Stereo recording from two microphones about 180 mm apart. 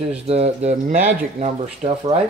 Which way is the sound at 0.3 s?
35° right (ahead or behind).